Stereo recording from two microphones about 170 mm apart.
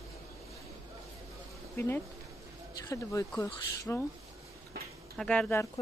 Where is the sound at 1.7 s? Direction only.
15° left (ahead or behind).